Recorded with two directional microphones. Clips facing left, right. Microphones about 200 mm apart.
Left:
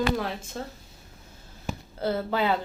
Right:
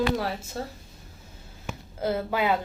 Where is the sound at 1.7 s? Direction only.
35° left (ahead or behind).